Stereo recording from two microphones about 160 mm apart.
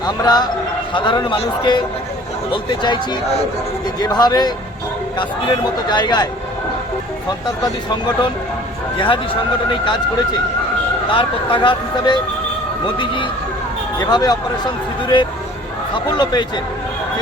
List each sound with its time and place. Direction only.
0.0 s speech: 25° left (ahead or behind)
7.3 s speech: 25° left (ahead or behind)
11.1 s speech: 30° left (ahead or behind)